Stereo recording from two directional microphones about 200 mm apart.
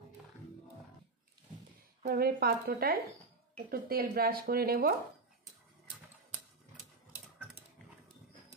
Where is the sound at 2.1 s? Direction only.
50° right (ahead or behind).